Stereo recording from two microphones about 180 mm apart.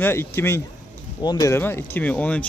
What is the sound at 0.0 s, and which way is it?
A man's voice, 10° left (ahead or behind).